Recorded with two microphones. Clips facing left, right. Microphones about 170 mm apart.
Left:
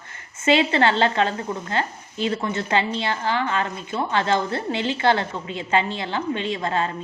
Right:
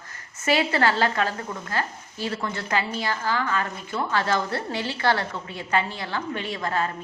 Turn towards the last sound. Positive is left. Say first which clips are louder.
# left 3 dB
turn(degrees=25)  # may be behind; listen again after turning